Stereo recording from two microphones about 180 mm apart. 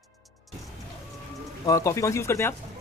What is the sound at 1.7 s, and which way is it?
Speech, 15° left (ahead or behind).